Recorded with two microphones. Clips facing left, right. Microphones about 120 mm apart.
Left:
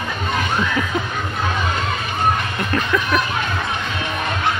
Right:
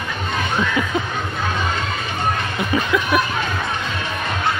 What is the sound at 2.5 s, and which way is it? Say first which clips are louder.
Speech: right 1 dB; 5° right (ahead or behind).